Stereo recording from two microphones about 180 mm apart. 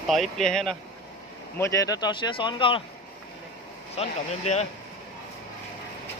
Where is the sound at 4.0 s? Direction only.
35° left (ahead or behind).